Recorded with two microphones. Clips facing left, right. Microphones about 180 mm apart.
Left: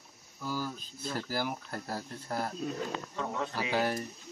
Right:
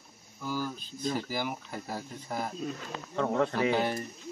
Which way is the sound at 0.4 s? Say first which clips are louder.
Right 2 dB; 5° left (ahead or behind).